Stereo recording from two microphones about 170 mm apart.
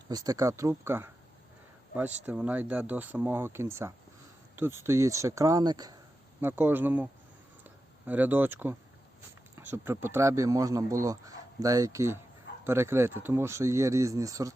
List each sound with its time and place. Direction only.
0.1 s speech: 20° right (ahead or behind)
6.4 s speech: 10° right (ahead or behind)
7.6 s a sound: 10° right (ahead or behind)
9.6 s speech: 15° right (ahead or behind)